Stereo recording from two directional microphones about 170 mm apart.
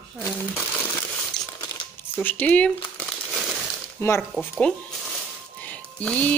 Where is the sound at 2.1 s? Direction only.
10° left (ahead or behind).